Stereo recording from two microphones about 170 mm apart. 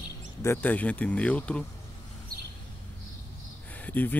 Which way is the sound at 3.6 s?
10° left (ahead or behind).